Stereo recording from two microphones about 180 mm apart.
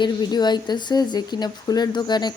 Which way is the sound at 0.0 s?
25° left (ahead or behind).